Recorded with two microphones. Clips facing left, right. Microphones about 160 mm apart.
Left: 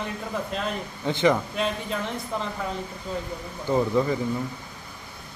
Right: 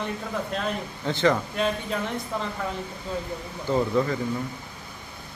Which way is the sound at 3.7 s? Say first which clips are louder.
Left 1 dB; 15° left (ahead or behind).